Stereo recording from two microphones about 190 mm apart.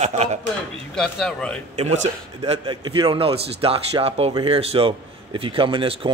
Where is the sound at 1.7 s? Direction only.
35° right (ahead or behind).